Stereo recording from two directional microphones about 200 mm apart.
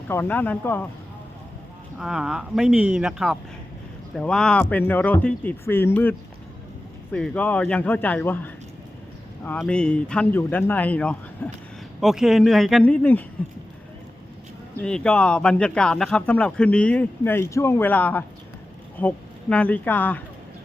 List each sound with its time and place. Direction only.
0.1 s speech: 10° left (ahead or behind)
2.0 s speech: 5° right (ahead or behind)
11.9 s speech: centre (ahead or behind)
14.8 s speech: 5° left (ahead or behind)